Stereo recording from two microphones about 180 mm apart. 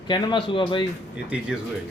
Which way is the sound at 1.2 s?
5° right (ahead or behind).